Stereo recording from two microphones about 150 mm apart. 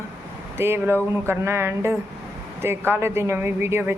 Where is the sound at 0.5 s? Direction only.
15° right (ahead or behind).